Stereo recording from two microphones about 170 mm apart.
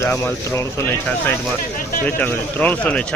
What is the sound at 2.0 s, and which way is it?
Speech, 10° left (ahead or behind).